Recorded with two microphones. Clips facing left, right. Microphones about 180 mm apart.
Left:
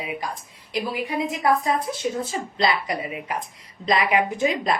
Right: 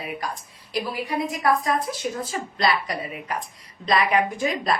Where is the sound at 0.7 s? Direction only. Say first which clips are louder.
Left 1 dB; 20° left (ahead or behind).